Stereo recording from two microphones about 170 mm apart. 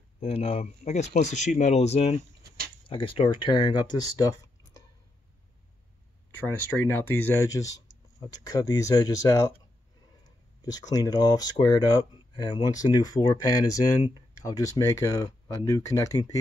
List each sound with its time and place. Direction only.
0.2 s speech: 35° left (ahead or behind); by 4.8 s 20° left (ahead or behind)
6.4 s speech: 10° left (ahead or behind)